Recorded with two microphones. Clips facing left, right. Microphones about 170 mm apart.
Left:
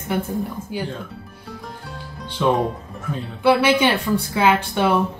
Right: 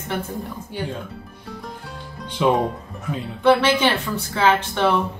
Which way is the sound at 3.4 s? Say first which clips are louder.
Even; 10° left (ahead or behind).